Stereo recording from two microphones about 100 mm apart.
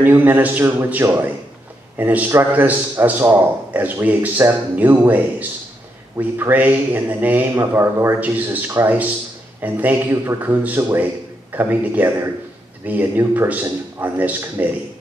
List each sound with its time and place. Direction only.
0.0 s a man's voice: 20° right (ahead or behind)